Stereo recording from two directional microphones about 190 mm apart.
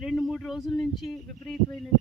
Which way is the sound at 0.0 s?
Centre (ahead or behind).